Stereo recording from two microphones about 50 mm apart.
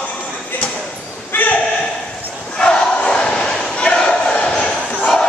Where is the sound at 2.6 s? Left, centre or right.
Centre.